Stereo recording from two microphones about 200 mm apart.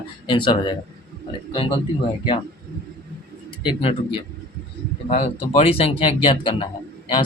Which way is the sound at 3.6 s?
25° left (ahead or behind).